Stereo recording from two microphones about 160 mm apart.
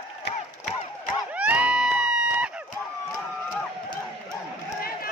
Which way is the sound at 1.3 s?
10° right (ahead or behind).